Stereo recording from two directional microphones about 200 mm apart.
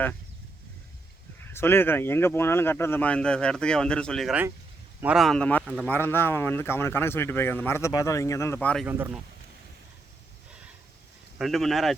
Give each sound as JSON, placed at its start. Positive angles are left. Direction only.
{"t": 1.5, "sound": "speech", "side_deg": 10}
{"t": 5.9, "sound": "speech", "side_deg": 10}
{"t": 8.9, "sound": "speech", "side_deg": -10}
{"t": 11.3, "sound": "speech", "side_deg": 0}